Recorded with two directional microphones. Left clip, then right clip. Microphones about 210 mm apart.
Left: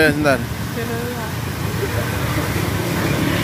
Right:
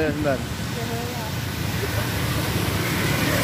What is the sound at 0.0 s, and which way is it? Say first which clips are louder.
Speech: left 8 dB; 25° left (ahead or behind).